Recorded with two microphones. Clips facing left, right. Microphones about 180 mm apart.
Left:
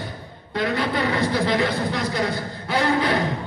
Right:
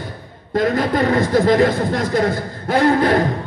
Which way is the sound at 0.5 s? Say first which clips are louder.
Right 6 dB; 45° right (ahead or behind).